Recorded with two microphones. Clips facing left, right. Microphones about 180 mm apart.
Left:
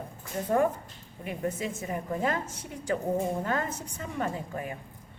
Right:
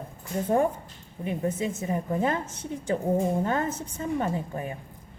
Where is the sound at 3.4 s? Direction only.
25° right (ahead or behind).